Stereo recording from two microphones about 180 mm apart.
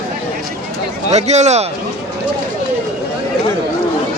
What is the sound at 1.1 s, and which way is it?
Speech, 40° right (ahead or behind).